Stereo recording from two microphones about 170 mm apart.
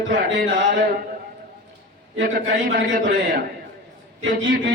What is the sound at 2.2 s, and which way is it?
Speech, 55° right (ahead or behind).